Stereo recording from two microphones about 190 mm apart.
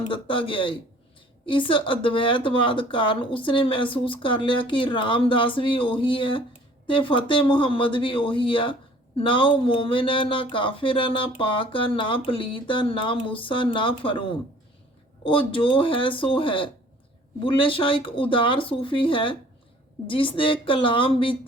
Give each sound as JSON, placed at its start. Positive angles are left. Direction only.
{"t": 0.1, "sound": "speech", "side_deg": 25}